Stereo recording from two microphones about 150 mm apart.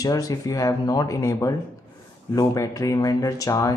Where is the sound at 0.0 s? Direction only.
25° left (ahead or behind).